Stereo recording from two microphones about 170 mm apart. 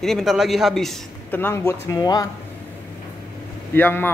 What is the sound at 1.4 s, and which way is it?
Speech, 15° left (ahead or behind).